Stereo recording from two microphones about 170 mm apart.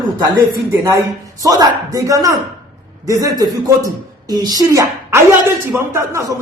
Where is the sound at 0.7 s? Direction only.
15° right (ahead or behind).